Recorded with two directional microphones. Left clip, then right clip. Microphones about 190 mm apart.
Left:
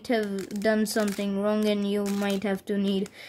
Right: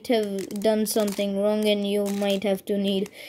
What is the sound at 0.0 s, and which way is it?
Speech, centre (ahead or behind).